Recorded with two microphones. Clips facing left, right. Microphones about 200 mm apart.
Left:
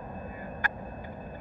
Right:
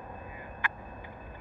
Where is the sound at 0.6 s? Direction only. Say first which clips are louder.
Even; 40° left (ahead or behind).